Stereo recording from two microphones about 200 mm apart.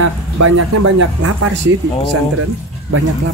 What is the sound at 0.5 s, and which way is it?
Speech, 80° right.